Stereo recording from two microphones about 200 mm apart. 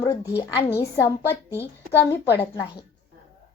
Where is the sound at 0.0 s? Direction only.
15° left (ahead or behind).